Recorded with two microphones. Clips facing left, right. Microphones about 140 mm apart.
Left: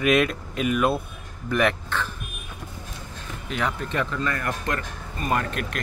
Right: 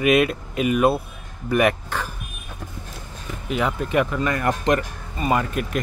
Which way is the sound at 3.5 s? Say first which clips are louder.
Right 4 dB; 5° right (ahead or behind).